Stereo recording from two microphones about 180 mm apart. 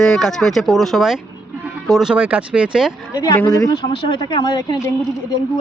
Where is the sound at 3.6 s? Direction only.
20° left (ahead or behind).